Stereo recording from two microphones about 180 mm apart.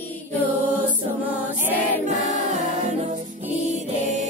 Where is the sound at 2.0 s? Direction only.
40° right (ahead or behind).